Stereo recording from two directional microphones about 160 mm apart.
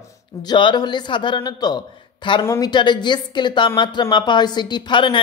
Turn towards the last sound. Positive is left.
turn(degrees=30)  # may be behind; listen again after turning